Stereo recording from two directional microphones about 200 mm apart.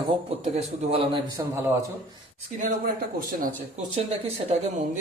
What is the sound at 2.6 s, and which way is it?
Speech, 40° right (ahead or behind).